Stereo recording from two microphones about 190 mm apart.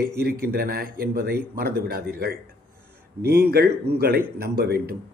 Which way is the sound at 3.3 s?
55° right (ahead or behind).